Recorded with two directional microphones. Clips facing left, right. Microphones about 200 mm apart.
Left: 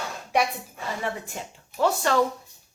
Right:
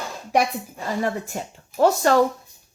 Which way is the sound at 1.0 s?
45° right (ahead or behind).